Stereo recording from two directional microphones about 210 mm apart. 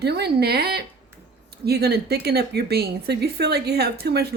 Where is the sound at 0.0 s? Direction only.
50° right (ahead or behind).